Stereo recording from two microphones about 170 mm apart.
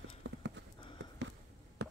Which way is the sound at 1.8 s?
80° right.